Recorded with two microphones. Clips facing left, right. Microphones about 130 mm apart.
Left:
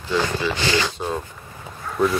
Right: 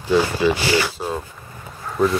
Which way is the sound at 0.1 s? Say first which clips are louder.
Right 5 dB; 15° right (ahead or behind).